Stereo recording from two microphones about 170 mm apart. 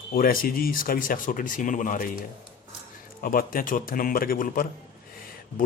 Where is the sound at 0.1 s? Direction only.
55° left (ahead or behind).